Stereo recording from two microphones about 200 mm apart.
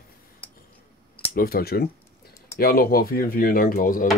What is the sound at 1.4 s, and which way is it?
Speech, 50° left (ahead or behind).